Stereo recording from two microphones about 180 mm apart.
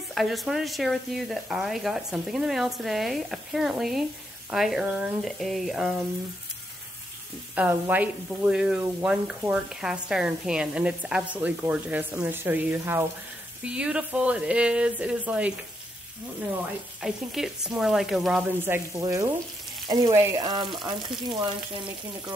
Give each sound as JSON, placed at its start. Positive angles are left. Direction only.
{"t": 0.1, "sound": "speech", "side_deg": 0}
{"t": 7.5, "sound": "speech", "side_deg": -10}
{"t": 17.0, "sound": "speech", "side_deg": 0}